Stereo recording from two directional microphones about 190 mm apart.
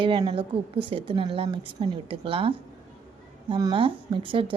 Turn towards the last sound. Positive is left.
turn(degrees=-25)  # may be behind; listen again after turning